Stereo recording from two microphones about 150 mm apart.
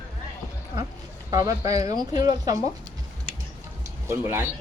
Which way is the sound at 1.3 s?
25° right (ahead or behind).